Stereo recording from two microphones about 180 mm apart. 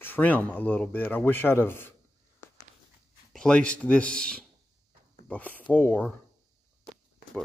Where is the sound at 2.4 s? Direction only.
15° left (ahead or behind).